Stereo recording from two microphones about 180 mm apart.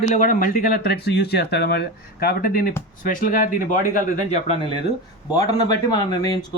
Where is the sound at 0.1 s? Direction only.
50° left (ahead or behind).